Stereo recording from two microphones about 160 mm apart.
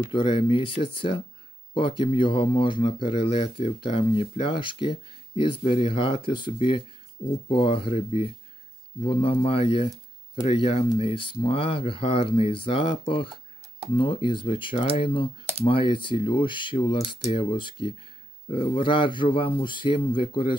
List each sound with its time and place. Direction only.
0.1 s speech: 35° left (ahead or behind)